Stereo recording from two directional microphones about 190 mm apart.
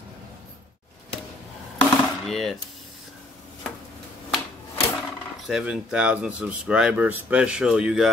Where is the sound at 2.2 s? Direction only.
Centre (ahead or behind).